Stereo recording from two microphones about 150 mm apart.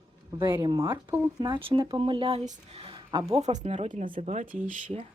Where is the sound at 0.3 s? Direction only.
25° right (ahead or behind).